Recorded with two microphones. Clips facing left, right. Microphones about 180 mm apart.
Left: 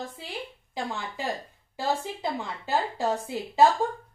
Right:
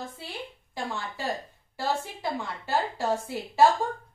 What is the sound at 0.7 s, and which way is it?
A woman's voice, 20° left (ahead or behind).